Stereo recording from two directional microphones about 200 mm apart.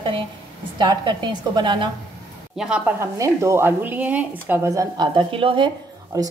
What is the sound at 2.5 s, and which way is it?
Speech, 5° right (ahead or behind).